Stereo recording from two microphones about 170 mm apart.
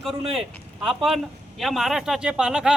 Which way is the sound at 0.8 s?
30° right (ahead or behind).